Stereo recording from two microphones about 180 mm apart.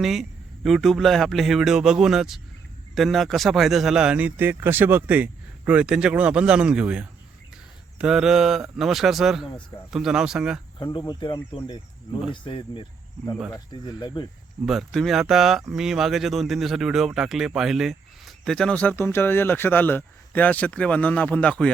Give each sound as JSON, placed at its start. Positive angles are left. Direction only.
{"t": 0.0, "sound": "speech", "side_deg": 0}
{"t": 10.9, "sound": "speech", "side_deg": 25}
{"t": 14.7, "sound": "speech", "side_deg": 0}